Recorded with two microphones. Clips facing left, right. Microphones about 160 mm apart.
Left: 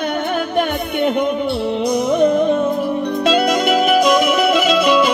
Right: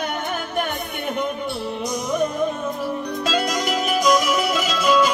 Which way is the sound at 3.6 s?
60° left (ahead or behind).